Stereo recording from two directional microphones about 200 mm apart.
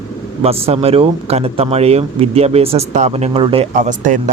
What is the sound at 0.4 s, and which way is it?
Speech, 30° right (ahead or behind).